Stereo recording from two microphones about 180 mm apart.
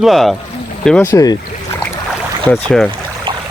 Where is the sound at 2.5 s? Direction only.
5° left (ahead or behind).